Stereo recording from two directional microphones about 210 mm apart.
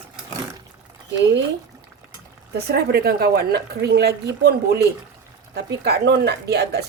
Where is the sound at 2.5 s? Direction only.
50° right (ahead or behind).